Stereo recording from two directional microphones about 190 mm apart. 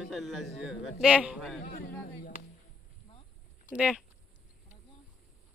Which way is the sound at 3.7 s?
5° right (ahead or behind).